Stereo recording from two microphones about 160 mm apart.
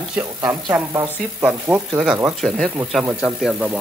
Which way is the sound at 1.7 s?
15° right (ahead or behind).